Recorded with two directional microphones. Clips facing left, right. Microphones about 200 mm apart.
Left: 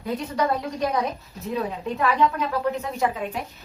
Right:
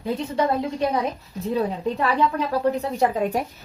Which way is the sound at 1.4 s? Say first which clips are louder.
Right 4 dB; 30° right (ahead or behind).